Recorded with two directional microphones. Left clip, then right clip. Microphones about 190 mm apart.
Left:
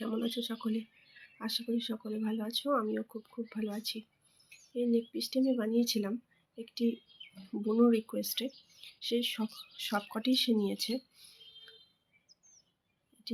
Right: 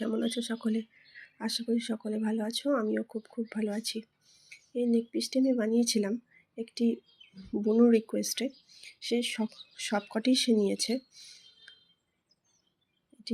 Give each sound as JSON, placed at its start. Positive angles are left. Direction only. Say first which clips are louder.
{"t": 0.0, "sound": "speech", "louder": "right 3 dB", "side_deg": -15}
{"t": 7.2, "sound": "bird", "louder": "left 5 dB", "side_deg": 45}
{"t": 7.6, "sound": "speech", "louder": "right 4 dB", "side_deg": -10}